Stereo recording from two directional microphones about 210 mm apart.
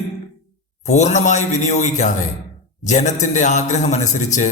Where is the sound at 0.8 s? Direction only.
35° left (ahead or behind).